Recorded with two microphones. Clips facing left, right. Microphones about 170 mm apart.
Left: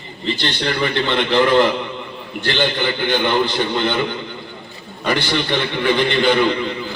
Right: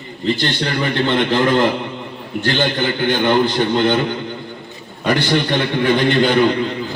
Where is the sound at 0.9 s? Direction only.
45° right (ahead or behind).